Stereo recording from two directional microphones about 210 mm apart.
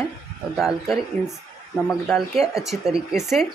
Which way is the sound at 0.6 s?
Centre (ahead or behind).